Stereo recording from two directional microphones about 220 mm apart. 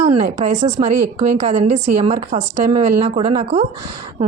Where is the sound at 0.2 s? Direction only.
35° right (ahead or behind).